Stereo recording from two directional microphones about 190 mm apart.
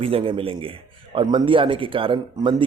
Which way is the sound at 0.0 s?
30° right (ahead or behind).